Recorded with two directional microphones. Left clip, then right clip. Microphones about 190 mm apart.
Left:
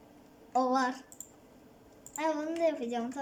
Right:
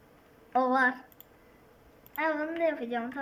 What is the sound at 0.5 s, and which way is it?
Speech, 10° left (ahead or behind).